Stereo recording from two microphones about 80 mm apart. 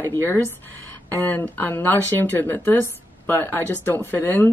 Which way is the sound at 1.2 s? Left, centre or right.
Left.